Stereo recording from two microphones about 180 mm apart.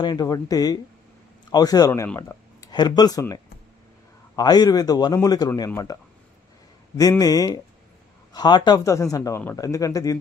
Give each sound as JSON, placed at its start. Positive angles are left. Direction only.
{"t": 0.0, "sound": "speech", "side_deg": 20}
{"t": 2.6, "sound": "speech", "side_deg": 25}